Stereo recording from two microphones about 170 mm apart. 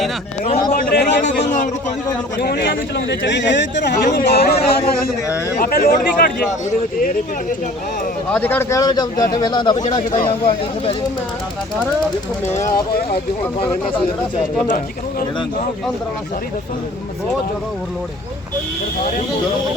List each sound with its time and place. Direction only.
0.4 s a sound: 35° left (ahead or behind)
0.8 s a man's voice: 75° left (ahead or behind)
8.3 s speech: 10° left (ahead or behind); by 10.9 s 30° left (ahead or behind)
12.5 s speech: 20° left (ahead or behind)